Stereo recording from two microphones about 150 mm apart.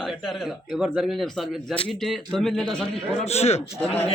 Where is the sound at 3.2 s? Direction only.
45° left (ahead or behind).